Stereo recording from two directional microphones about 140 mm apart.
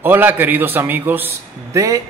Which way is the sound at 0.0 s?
15° right (ahead or behind).